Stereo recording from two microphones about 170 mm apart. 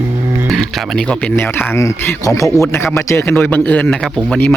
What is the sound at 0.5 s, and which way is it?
A man's voice, centre (ahead or behind).